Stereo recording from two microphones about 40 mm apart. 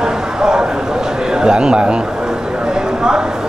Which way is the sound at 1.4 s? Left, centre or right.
Right.